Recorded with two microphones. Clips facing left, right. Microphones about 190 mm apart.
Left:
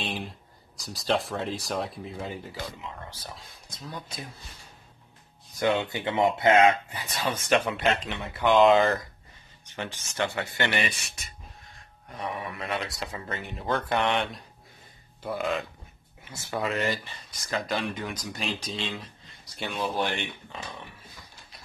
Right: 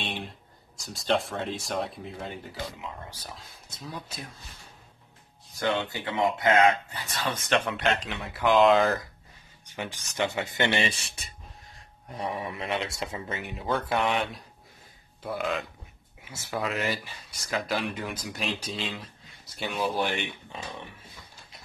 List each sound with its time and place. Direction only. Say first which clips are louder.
0.0 s a sound: left 2 dB; centre (ahead or behind)
0.9 s speech: even; centre (ahead or behind)
5.6 s speech: left 3 dB; 20° left (ahead or behind)
6.9 s speech: left 1 dB; 10° left (ahead or behind)
9.7 s a man's voice: even; 15° right (ahead or behind)
13.3 s speech: left 1 dB; 10° right (ahead or behind)